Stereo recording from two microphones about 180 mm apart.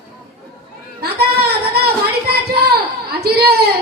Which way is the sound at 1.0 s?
60° right (ahead or behind).